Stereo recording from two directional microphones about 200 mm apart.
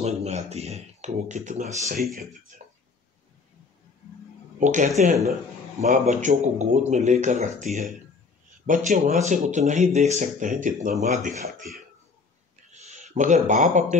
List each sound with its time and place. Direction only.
0.0 s speech: 35° right (ahead or behind)
4.6 s speech: 40° right (ahead or behind)
8.6 s speech: 40° right (ahead or behind)
12.7 s speech: 35° right (ahead or behind)